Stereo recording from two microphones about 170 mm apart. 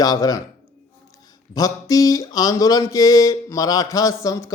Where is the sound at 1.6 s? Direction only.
20° left (ahead or behind).